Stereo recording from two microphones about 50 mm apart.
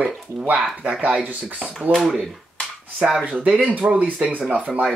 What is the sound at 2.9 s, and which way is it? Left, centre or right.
Speech, centre.